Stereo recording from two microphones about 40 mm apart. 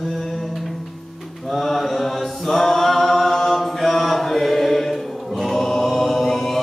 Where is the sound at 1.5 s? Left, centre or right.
Centre.